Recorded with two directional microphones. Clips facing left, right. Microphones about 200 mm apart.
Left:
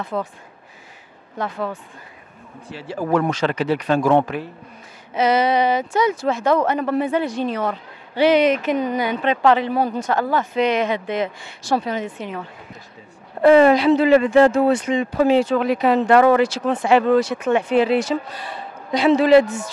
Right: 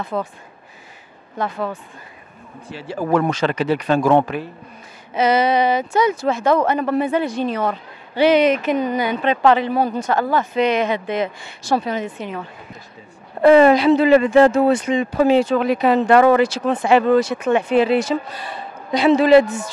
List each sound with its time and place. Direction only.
0.0 s speech: 25° right (ahead or behind)
1.4 s speech: 20° right (ahead or behind)
3.0 s speech: 20° right (ahead or behind)
4.0 s speech: 25° right (ahead or behind)
5.1 s speech: 10° right (ahead or behind)
16.7 s speech: 20° right (ahead or behind)